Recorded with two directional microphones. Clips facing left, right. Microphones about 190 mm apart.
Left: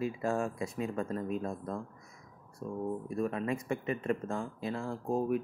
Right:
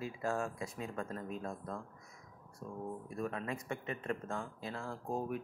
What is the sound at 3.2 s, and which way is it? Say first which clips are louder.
Speech: left 5 dB; 10° left (ahead or behind).